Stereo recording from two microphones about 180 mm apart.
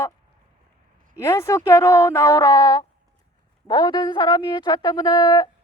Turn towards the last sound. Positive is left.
turn(degrees=25)  # may be behind; listen again after turning